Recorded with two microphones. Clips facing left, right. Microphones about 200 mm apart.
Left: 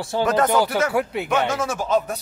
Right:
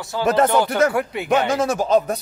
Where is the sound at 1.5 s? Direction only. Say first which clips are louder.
Right 4 dB; 35° right (ahead or behind).